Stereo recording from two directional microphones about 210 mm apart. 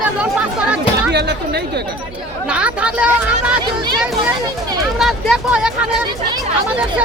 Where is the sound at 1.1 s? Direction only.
50° right (ahead or behind).